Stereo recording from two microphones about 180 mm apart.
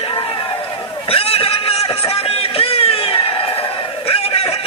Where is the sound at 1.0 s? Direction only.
30° left (ahead or behind).